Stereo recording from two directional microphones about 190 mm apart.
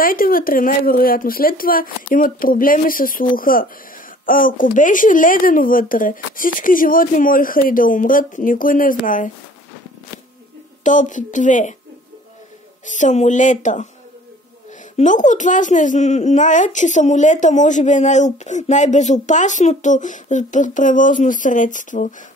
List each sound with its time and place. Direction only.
0.0 s speech: 50° left (ahead or behind)
10.8 s speech: 40° left (ahead or behind)
12.8 s speech: 40° left (ahead or behind)
15.0 s speech: 40° left (ahead or behind)